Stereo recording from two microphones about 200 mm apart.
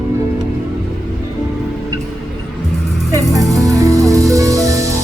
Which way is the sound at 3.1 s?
15° right (ahead or behind).